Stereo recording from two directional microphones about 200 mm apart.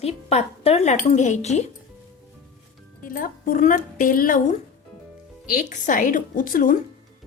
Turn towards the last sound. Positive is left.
turn(degrees=40)  # may be behind; listen again after turning